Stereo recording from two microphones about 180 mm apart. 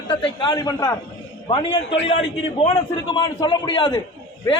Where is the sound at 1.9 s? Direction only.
90° left.